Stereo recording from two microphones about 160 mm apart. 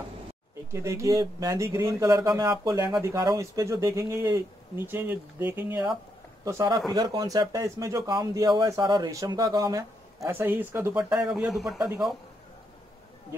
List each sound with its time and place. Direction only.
0.7 s speech: 20° right (ahead or behind)
6.4 s speech: 25° right (ahead or behind); by 11.9 s centre (ahead or behind)